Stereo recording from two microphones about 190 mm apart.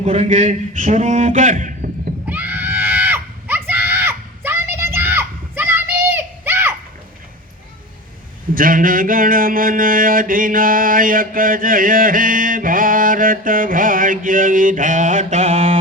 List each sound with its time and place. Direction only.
0.0 s a man's voice: 35° right (ahead or behind)
2.2 s screaming: 10° right (ahead or behind)
8.5 s a sound: 45° right (ahead or behind)